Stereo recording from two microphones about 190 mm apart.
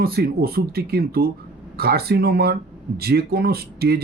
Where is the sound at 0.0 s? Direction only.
55° right (ahead or behind).